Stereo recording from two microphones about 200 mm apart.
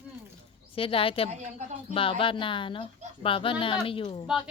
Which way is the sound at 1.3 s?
35° right (ahead or behind).